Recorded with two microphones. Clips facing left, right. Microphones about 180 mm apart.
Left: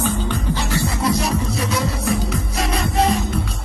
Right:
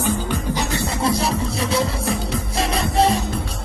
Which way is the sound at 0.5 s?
20° right (ahead or behind).